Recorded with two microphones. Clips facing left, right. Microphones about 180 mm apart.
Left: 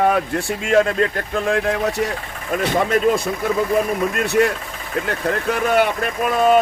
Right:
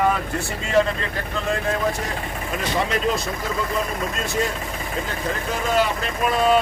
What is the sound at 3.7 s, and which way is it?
Speech, 65° left (ahead or behind).